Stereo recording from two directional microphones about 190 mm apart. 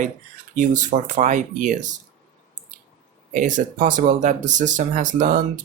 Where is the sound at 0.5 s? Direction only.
40° right (ahead or behind).